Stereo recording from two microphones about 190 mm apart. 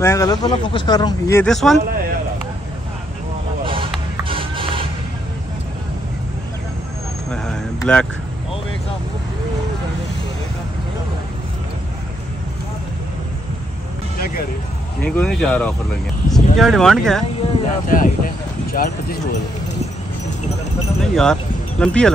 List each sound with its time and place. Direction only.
0.0 s speech: 15° left (ahead or behind)
1.4 s speech: centre (ahead or behind)
3.6 s a sound: 30° right (ahead or behind)
7.4 s vehicle: 5° left (ahead or behind)
14.2 s music: 50° left (ahead or behind)
15.0 s speech: 5° left (ahead or behind)
17.4 s speech: 45° left (ahead or behind)
21.0 s speech: 5° left (ahead or behind)